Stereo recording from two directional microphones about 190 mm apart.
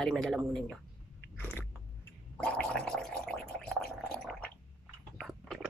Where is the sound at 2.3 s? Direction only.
5° left (ahead or behind).